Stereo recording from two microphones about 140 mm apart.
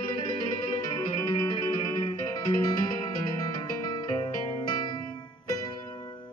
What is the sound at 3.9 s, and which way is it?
Music, 35° left (ahead or behind).